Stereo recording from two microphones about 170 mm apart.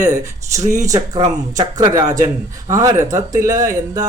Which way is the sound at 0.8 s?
20° right (ahead or behind).